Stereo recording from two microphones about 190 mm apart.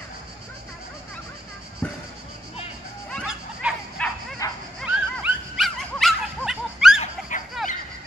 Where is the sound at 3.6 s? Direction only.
5° right (ahead or behind).